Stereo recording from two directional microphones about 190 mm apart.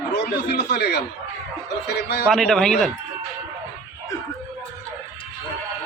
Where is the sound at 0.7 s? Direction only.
60° left (ahead or behind).